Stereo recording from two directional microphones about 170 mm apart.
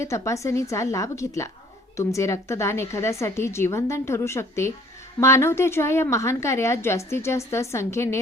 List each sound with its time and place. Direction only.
0.0 s a woman's voice: 15° left (ahead or behind)